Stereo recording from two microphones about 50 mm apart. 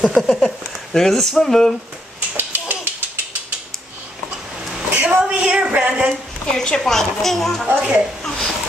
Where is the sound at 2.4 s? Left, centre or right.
Right.